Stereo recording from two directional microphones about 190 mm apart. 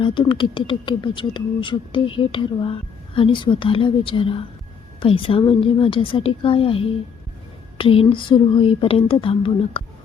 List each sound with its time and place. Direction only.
0.0 s speech: 25° left (ahead or behind)